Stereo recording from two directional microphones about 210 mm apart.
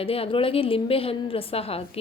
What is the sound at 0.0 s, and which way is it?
Speech, 25° left (ahead or behind).